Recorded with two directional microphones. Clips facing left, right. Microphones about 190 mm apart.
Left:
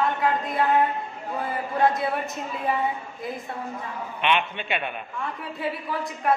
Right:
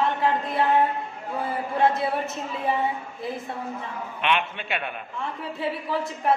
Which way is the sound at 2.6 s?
25° right (ahead or behind).